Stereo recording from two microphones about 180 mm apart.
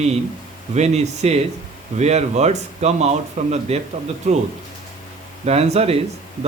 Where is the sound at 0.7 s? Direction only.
40° right (ahead or behind).